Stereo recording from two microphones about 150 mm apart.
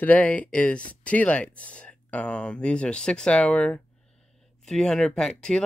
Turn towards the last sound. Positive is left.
turn(degrees=5)  # may be behind; listen again after turning